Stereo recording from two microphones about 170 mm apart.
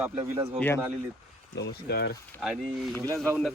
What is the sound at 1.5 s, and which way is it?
Speech, 85° left.